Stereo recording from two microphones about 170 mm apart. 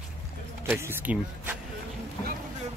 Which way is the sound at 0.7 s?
15° right (ahead or behind).